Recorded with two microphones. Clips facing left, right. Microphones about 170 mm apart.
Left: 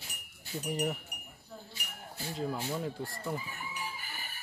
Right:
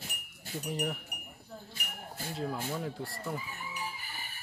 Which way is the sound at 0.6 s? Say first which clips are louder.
Left 2 dB; 5° left (ahead or behind).